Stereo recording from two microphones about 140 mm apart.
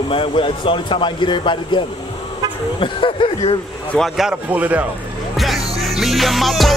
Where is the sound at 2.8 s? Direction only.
40° left (ahead or behind).